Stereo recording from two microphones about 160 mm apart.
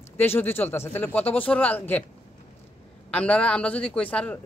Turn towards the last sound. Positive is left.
turn(degrees=10)  # may be behind; listen again after turning